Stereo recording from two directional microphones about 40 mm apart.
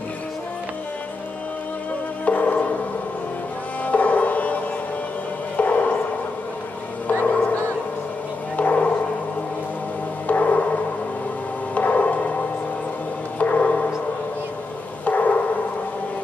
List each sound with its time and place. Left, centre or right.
2.2 s music: left
3.8 s music: left
5.6 s music: left
7.1 s music: left
8.5 s gong: left
10.2 s gong: left
11.7 s a sound: left
13.4 s music: left
15.0 s a sound: left